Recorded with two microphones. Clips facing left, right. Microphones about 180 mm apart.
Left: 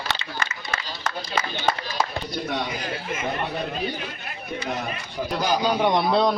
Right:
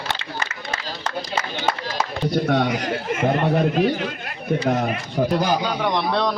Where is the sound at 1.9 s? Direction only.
60° right (ahead or behind).